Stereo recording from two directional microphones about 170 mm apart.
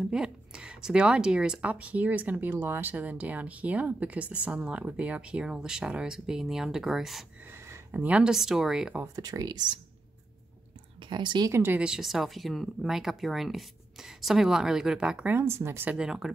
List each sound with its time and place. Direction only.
0.1 s speech: 5° right (ahead or behind)
7.5 s speech: 15° right (ahead or behind)
9.0 s speech: 20° right (ahead or behind)
11.0 s speech: 25° right (ahead or behind)
11.5 s speech: 10° right (ahead or behind)